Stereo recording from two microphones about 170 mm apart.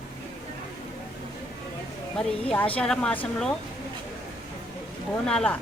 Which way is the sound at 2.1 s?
5° left (ahead or behind).